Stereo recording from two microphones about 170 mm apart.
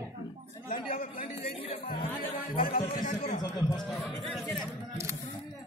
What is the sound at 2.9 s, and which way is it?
Speech, 55° left (ahead or behind).